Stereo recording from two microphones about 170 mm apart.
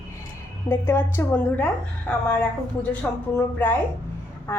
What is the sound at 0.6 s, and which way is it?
A woman's voice, 15° left (ahead or behind).